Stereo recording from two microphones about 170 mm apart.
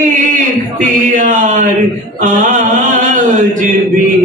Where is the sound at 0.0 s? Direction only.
50° right (ahead or behind).